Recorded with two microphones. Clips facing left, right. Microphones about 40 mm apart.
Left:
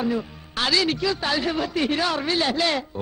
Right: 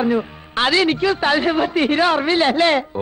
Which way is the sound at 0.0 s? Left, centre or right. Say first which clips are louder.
Right 6 dB; right.